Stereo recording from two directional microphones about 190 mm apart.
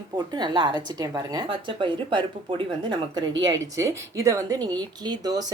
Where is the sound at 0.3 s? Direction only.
25° right (ahead or behind).